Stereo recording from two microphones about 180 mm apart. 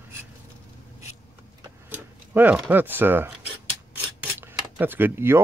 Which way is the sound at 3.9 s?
10° right (ahead or behind).